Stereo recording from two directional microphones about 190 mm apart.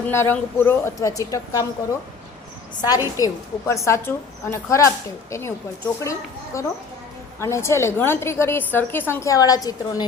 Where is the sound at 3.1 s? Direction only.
15° left (ahead or behind).